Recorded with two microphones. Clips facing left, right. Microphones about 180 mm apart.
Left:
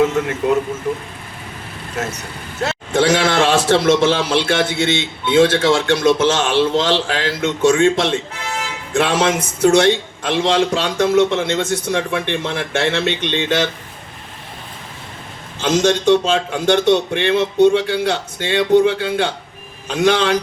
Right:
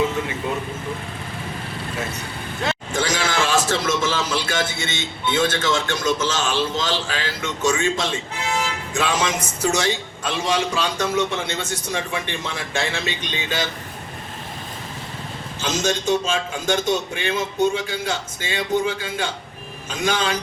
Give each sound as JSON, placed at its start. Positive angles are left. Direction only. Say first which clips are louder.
{"t": 0.0, "sound": "vehicle", "louder": "left 6 dB", "side_deg": 75}
{"t": 2.9, "sound": "a man's voice", "louder": "left 10 dB", "side_deg": 65}
{"t": 15.6, "sound": "a man's voice", "louder": "left 8 dB", "side_deg": 65}